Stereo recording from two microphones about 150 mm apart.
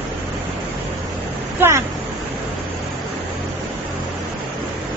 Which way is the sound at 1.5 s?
15° right (ahead or behind).